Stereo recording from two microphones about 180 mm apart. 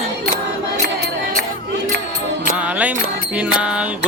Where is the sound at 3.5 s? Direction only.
5° right (ahead or behind).